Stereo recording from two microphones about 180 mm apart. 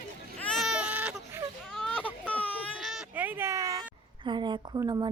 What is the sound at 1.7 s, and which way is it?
Baby cry, 5° left (ahead or behind).